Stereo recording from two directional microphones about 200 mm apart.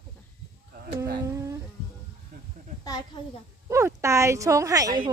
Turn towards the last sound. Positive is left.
turn(degrees=-15)  # may be behind; listen again after turning